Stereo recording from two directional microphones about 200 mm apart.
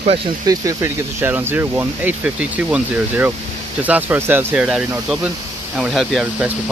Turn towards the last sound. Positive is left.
turn(degrees=-5)  # may be behind; listen again after turning